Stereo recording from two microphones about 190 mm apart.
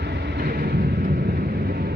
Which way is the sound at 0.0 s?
60° right (ahead or behind).